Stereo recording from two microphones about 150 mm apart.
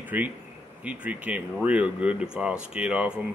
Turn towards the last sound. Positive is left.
turn(degrees=-10)  # may be behind; listen again after turning